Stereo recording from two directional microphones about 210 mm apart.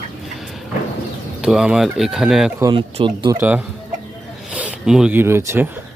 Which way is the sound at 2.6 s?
20° right (ahead or behind).